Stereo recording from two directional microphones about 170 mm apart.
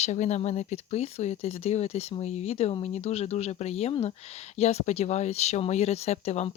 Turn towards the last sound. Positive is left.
turn(degrees=40)  # may be behind; listen again after turning